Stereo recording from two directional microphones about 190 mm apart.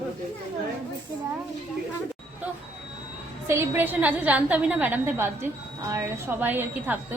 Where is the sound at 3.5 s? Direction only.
10° right (ahead or behind).